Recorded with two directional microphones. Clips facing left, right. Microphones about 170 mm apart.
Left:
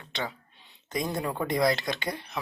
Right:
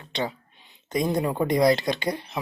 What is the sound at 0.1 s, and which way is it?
Speech, 20° right (ahead or behind).